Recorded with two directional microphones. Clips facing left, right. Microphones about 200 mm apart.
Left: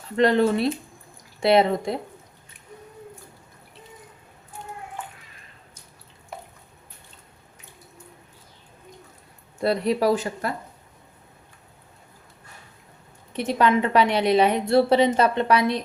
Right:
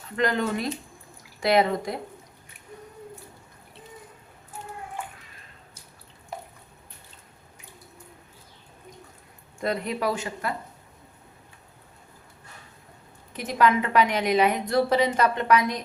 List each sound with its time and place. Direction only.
0.2 s a woman's voice: 30° left (ahead or behind)
9.6 s a woman's voice: 35° left (ahead or behind)
13.3 s a woman's voice: 30° left (ahead or behind)